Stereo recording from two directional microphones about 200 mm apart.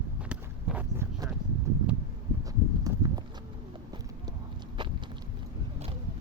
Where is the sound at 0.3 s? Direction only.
10° right (ahead or behind).